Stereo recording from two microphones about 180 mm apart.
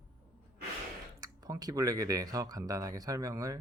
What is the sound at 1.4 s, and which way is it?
Speech, 20° right (ahead or behind).